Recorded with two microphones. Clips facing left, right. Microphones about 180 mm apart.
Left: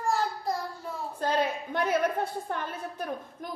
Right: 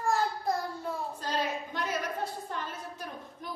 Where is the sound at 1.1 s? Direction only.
55° left (ahead or behind).